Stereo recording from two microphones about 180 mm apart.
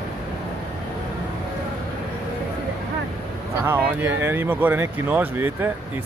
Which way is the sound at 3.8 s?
10° right (ahead or behind).